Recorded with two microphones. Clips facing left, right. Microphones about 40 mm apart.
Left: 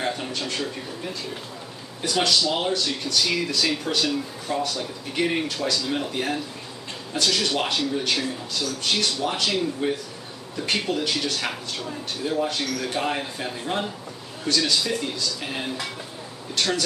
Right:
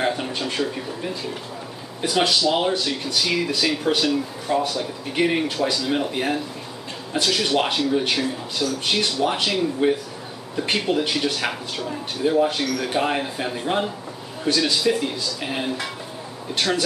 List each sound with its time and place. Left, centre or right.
0.0 s speech: centre